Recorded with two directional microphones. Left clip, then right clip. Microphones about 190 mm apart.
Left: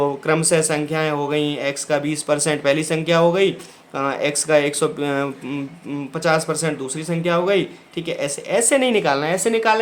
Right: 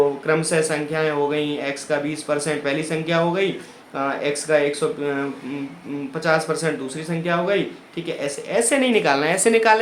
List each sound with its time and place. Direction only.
0.3 s speech: 45° left (ahead or behind)